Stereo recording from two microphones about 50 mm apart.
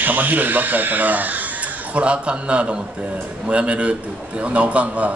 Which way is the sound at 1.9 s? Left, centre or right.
Right.